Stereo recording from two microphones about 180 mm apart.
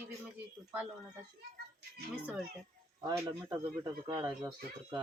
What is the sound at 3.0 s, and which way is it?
Speech, 20° right (ahead or behind).